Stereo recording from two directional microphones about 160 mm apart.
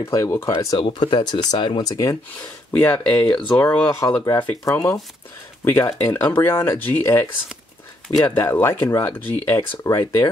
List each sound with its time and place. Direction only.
0.0 s speech: 20° left (ahead or behind)
2.4 s speech: 10° left (ahead or behind)
8.3 s speech: 15° left (ahead or behind)